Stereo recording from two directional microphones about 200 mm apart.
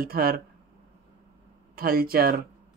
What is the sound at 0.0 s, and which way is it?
Speech, 50° right (ahead or behind).